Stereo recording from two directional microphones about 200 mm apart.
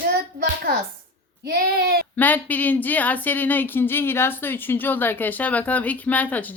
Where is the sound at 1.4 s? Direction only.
50° right (ahead or behind).